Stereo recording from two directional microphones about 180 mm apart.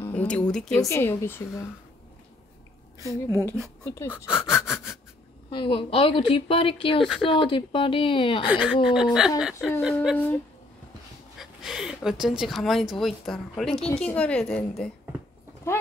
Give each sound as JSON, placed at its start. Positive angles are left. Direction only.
{"t": 0.0, "sound": "speech", "side_deg": 10}
{"t": 0.7, "sound": "a woman's voice", "side_deg": 15}
{"t": 3.0, "sound": "a woman's voice", "side_deg": -20}
{"t": 3.8, "sound": "a woman's voice", "side_deg": 15}
{"t": 5.5, "sound": "a woman's voice", "side_deg": 30}
{"t": 8.5, "sound": "a woman's voice", "side_deg": -5}